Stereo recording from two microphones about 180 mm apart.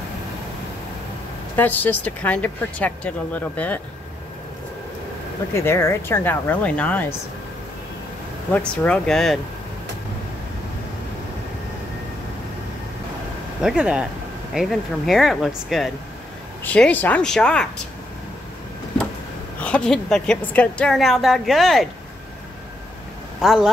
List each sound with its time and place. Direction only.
1.6 s speech: 10° left (ahead or behind)
5.5 s speech: 15° left (ahead or behind)
8.5 s a woman's voice: 5° left (ahead or behind)
13.6 s a woman's voice: 5° right (ahead or behind)
19.6 s a woman's voice: 5° left (ahead or behind)
23.4 s a woman's voice: centre (ahead or behind)